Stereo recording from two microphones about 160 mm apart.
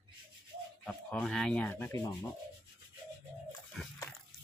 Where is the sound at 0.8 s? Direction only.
5° left (ahead or behind).